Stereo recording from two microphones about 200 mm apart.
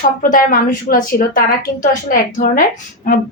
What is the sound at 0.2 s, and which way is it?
Speech, 45° left (ahead or behind).